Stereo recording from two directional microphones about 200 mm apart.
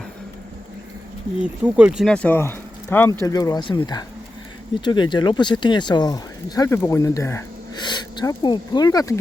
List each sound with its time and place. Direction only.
1.6 s speech: 5° right (ahead or behind); by 9.1 s 20° left (ahead or behind)